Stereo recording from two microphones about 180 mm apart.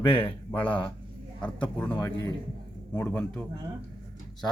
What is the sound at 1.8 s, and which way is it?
Speech, 5° left (ahead or behind).